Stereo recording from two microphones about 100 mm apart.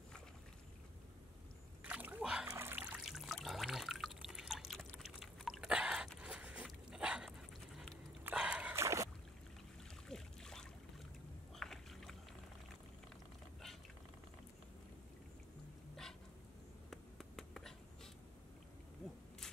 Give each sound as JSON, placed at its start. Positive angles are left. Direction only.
{"t": 1.8, "sound": "splash", "side_deg": -15}
{"t": 2.5, "sound": "a sound", "side_deg": -25}
{"t": 2.8, "sound": "water", "side_deg": -10}
{"t": 5.0, "sound": "a sound", "side_deg": -5}
{"t": 8.4, "sound": "dog", "side_deg": -10}
{"t": 8.7, "sound": "rowboat", "side_deg": -30}
{"t": 10.0, "sound": "boat", "side_deg": 5}
{"t": 16.9, "sound": "finger snapping", "side_deg": 5}